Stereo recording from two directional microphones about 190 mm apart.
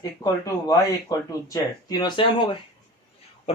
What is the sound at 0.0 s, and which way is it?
Speech, 20° left (ahead or behind).